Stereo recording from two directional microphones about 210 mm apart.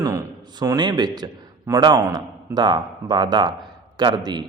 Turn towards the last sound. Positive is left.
turn(degrees=-20)  # may be behind; listen again after turning